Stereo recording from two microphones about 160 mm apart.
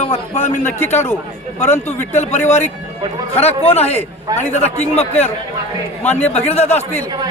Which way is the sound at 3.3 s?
40° left (ahead or behind).